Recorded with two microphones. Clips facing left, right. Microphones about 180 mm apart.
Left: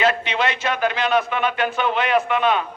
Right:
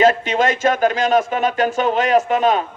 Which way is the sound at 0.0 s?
45° right (ahead or behind).